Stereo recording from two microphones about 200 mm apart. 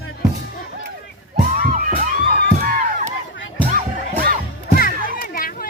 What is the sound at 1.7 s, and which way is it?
Music, 45° right (ahead or behind).